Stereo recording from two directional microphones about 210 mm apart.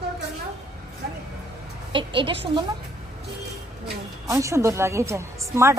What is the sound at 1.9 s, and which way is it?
Speech, 25° right (ahead or behind).